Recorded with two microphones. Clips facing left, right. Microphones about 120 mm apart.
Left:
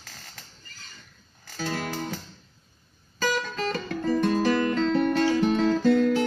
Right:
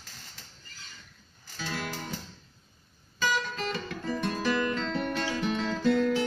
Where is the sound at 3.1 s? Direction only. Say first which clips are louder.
Left 3 dB; 40° left (ahead or behind).